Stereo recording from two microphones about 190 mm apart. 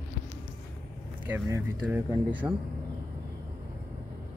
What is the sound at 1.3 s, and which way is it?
Speech, 10° right (ahead or behind).